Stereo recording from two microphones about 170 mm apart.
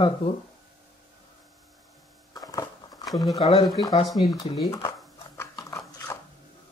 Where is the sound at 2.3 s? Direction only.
20° left (ahead or behind).